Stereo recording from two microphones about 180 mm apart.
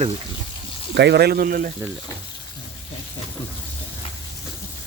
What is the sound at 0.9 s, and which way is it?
Speech, 65° right (ahead or behind).